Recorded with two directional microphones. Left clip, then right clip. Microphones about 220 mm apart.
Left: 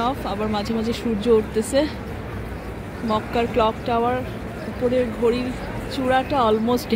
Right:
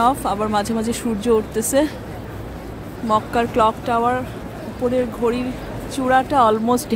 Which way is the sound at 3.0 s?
15° right (ahead or behind).